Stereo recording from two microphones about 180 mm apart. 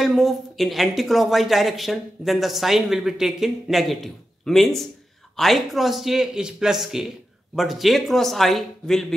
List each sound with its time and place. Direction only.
0.0 s speech: centre (ahead or behind)